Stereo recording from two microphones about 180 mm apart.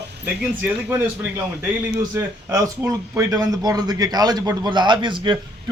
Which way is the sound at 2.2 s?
20° right (ahead or behind).